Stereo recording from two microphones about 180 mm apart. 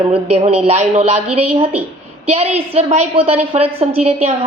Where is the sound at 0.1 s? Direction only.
35° right (ahead or behind).